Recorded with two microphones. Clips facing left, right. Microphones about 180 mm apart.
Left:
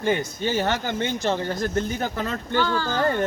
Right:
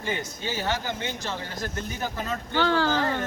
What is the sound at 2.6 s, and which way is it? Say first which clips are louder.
Speech: even; 85° right.